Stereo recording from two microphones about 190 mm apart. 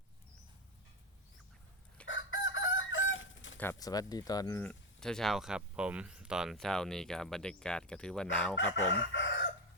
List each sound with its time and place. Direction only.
2.0 s chicken: 80° left
3.6 s speech: 15° left (ahead or behind)
4.6 s speech: 5° left (ahead or behind)
9.0 s chicken: 75° left (ahead or behind)